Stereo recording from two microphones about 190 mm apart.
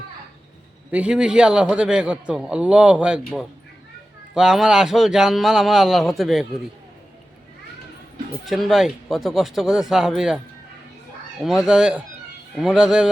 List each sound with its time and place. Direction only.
0.9 s a man's voice: 5° right (ahead or behind)
8.4 s a man's voice: centre (ahead or behind)
11.4 s a man's voice: centre (ahead or behind)